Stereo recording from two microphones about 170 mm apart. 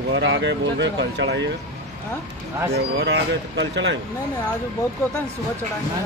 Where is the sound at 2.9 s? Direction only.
90° right.